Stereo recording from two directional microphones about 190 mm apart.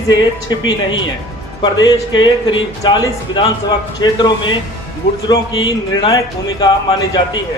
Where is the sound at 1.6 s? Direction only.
25° left (ahead or behind).